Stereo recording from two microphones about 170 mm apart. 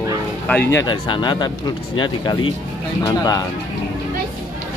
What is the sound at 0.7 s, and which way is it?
Speech, 25° left (ahead or behind).